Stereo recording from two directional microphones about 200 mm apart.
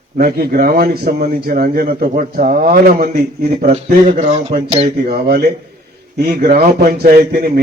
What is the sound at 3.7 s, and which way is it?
Speech, 35° right (ahead or behind).